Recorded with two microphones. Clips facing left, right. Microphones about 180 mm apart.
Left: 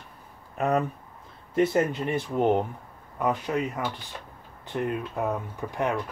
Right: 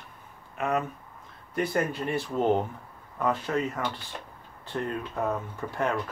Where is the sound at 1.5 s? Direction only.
25° left (ahead or behind).